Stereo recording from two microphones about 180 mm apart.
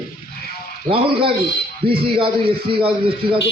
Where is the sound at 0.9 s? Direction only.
30° right (ahead or behind).